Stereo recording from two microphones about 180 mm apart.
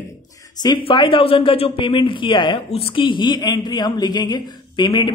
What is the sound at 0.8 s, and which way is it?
Speech, 30° left (ahead or behind).